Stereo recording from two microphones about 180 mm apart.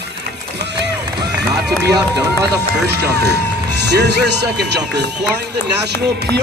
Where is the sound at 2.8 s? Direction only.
65° right (ahead or behind).